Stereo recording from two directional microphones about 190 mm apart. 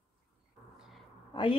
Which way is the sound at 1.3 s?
25° left (ahead or behind).